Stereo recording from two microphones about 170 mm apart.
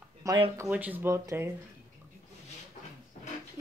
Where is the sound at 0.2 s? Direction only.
20° right (ahead or behind).